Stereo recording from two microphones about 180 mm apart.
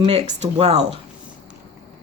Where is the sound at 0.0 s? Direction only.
35° right (ahead or behind).